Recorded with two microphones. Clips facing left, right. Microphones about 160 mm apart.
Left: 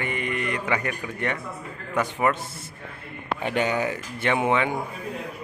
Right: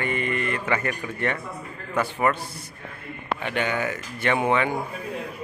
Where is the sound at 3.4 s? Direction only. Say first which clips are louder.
Left 3 dB; 35° left (ahead or behind).